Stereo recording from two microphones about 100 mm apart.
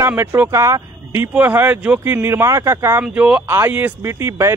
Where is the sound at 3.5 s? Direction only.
20° right (ahead or behind).